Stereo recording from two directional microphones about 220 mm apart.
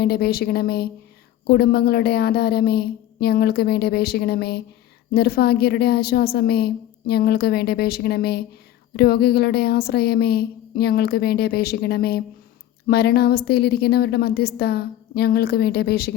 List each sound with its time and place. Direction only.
0.0 s a woman's voice: 45° left (ahead or behind)